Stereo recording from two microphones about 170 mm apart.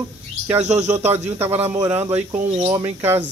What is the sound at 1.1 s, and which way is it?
Speech, 15° right (ahead or behind).